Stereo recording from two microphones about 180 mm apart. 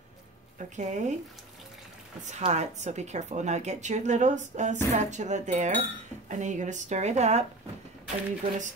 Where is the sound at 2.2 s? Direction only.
40° right (ahead or behind).